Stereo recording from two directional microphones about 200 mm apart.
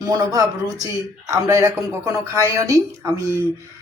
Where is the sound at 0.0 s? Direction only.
20° right (ahead or behind).